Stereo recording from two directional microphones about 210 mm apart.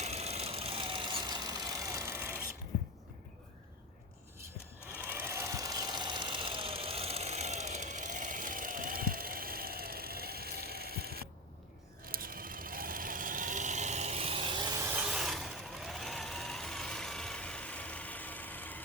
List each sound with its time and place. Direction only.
0.0 s vehicle: 30° right (ahead or behind); by 2.5 s 10° right (ahead or behind)
4.9 s a sound: 10° right (ahead or behind); by 11.2 s 45° right (ahead or behind)
12.0 s vehicle: 45° right (ahead or behind); by 18.8 s 10° left (ahead or behind)